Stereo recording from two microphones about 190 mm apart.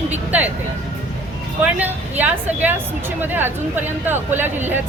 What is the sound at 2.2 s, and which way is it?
A woman's voice, 10° right (ahead or behind).